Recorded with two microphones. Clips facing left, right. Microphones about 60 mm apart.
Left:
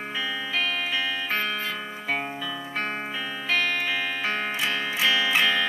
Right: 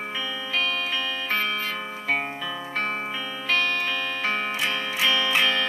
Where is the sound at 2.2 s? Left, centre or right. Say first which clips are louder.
Right 1 dB; centre.